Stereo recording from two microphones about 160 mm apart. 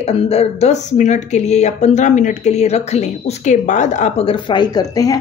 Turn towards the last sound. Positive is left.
turn(degrees=25)  # may be behind; listen again after turning